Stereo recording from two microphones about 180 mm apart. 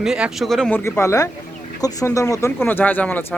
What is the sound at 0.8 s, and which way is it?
Speech, 15° left (ahead or behind).